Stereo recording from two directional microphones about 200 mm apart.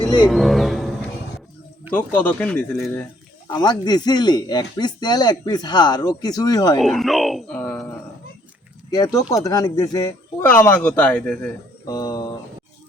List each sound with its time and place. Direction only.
0.0 s music: 20° left (ahead or behind)
0.3 s speech: centre (ahead or behind)
2.0 s speech: 10° left (ahead or behind)
3.4 s speech: 20° left (ahead or behind)
6.7 s speech: centre (ahead or behind)
8.9 s speech: 20° left (ahead or behind)
11.9 s speech: 20° left (ahead or behind)